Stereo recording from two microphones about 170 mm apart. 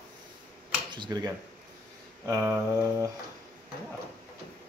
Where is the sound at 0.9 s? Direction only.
25° right (ahead or behind).